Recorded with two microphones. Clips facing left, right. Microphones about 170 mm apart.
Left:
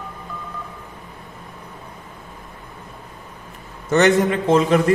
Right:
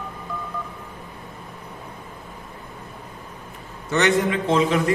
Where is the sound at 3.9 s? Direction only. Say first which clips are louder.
Left 4 dB; 45° left (ahead or behind).